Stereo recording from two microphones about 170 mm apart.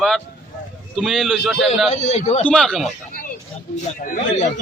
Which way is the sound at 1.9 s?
45° left (ahead or behind).